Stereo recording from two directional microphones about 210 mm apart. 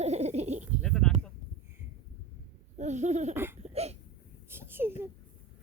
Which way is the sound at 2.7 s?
35° right (ahead or behind).